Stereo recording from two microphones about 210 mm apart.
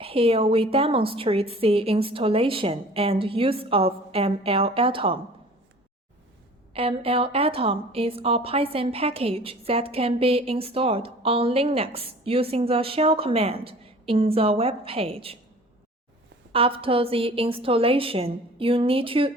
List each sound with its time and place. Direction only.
0.0 s a woman's voice: 25° right (ahead or behind)
6.7 s a woman's voice: 25° right (ahead or behind)
16.5 s a woman's voice: 25° right (ahead or behind)